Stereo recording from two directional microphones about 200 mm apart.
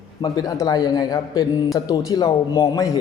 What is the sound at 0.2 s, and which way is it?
A man's voice, 20° left (ahead or behind).